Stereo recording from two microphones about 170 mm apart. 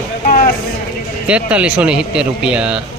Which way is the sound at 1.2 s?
5° right (ahead or behind).